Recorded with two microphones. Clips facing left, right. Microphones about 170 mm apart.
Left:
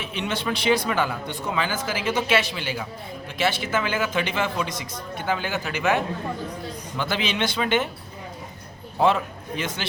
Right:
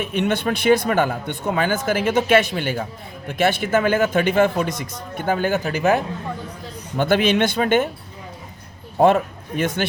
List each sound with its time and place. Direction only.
0.0 s speech: 55° right (ahead or behind)
6.9 s speech: 55° right (ahead or behind)
9.0 s a man's voice: 50° right (ahead or behind)